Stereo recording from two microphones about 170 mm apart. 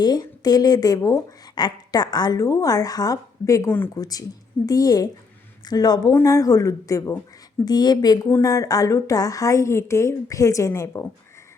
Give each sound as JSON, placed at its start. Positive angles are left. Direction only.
{"t": 0.0, "sound": "speech", "side_deg": 25}